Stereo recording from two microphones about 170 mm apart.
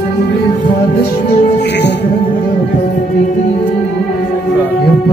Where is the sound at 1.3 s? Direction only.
90° left.